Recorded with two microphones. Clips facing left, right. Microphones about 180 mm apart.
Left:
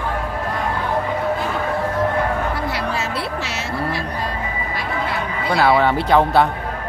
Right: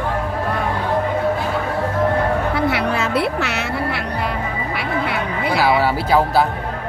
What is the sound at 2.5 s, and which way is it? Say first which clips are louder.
Music: right 4 dB; 60° right (ahead or behind).